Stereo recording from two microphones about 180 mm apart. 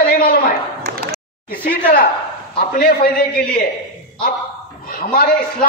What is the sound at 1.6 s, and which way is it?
A woman's voice, 55° left (ahead or behind).